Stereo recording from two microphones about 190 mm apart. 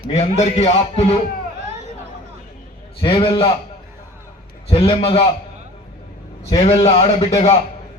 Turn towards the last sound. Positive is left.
turn(degrees=35)  # may be behind; listen again after turning